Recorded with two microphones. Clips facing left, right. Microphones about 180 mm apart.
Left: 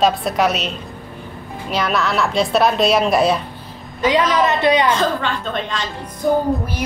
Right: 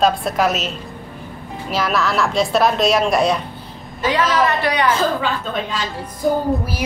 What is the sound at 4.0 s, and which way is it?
Speech, 20° left (ahead or behind).